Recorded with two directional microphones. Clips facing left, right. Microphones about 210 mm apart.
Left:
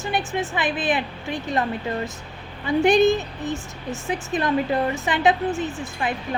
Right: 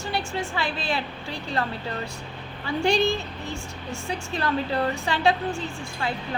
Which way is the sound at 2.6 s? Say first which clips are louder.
Left 6 dB; 20° left (ahead or behind).